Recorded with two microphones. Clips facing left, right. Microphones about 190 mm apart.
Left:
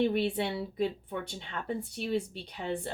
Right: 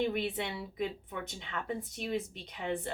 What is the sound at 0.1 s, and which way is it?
A woman's voice, 30° left (ahead or behind).